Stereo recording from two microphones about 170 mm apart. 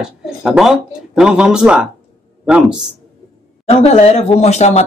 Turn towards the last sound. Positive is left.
turn(degrees=40)  # may be behind; listen again after turning